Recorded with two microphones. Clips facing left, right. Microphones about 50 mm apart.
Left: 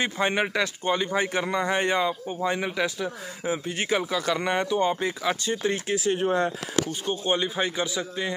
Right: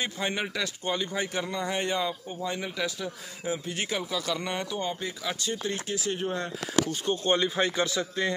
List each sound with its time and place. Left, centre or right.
0.0 s a man's voice: left
5.4 s speech: centre
5.9 s a man's voice: left
6.8 s speech: centre